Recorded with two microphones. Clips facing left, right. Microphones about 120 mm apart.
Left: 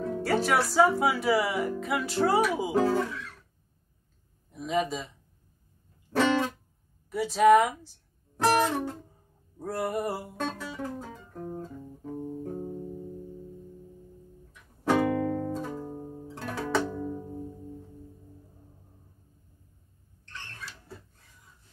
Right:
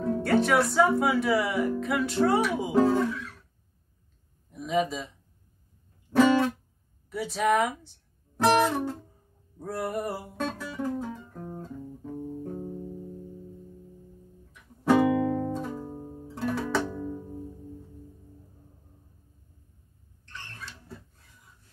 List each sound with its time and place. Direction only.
0.0 s speech: centre (ahead or behind)
4.5 s a man's voice: centre (ahead or behind)
6.1 s music: 5° right (ahead or behind)
7.1 s speech: centre (ahead or behind)
11.1 s guitar: 5° left (ahead or behind)
11.5 s music: centre (ahead or behind)
12.1 s music: 20° left (ahead or behind)
14.9 s music: 5° right (ahead or behind)